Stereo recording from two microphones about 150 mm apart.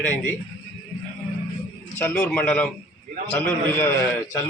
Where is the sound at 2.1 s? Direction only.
5° left (ahead or behind).